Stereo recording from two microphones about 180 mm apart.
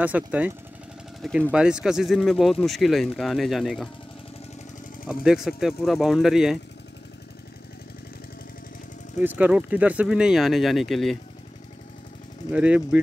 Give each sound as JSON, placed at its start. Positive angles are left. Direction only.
{"t": 0.0, "sound": "speech", "side_deg": -10}
{"t": 5.0, "sound": "speech", "side_deg": -5}
{"t": 9.2, "sound": "speech", "side_deg": -10}
{"t": 12.5, "sound": "speech", "side_deg": -5}